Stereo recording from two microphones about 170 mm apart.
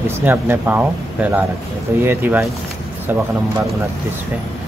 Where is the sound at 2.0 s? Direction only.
10° right (ahead or behind).